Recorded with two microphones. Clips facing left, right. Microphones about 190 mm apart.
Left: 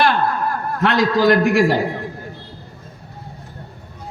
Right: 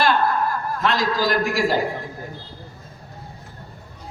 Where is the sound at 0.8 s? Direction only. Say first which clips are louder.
Left 6 dB; 65° left (ahead or behind).